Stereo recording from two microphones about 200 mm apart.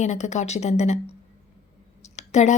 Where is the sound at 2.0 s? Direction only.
35° left (ahead or behind).